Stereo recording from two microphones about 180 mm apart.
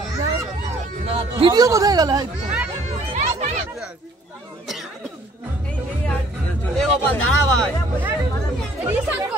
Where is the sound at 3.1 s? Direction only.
35° right (ahead or behind).